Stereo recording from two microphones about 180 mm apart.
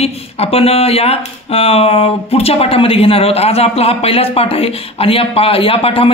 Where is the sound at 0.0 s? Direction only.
35° left (ahead or behind).